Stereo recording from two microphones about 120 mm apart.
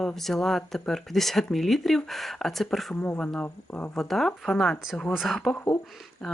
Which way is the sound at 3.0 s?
15° left (ahead or behind).